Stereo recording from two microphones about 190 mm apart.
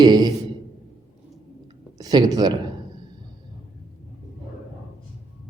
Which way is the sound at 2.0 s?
20° right (ahead or behind).